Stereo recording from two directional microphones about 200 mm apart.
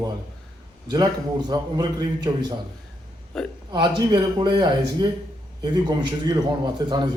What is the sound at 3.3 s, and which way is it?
Speech, 5° left (ahead or behind).